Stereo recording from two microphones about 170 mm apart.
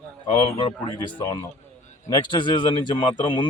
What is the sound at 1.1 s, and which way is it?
A man's voice, 25° left (ahead or behind).